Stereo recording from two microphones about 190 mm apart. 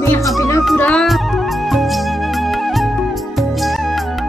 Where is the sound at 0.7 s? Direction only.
5° left (ahead or behind).